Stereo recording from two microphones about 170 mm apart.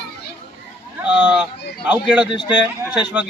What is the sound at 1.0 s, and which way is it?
Speech, 10° right (ahead or behind).